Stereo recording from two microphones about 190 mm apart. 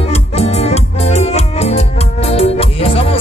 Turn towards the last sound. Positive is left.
turn(degrees=30)  # may be behind; listen again after turning